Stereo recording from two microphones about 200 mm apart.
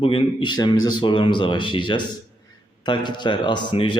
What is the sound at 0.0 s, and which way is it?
A man's voice, 25° left (ahead or behind).